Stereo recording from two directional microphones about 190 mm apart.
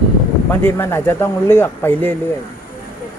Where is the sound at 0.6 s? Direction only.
10° left (ahead or behind).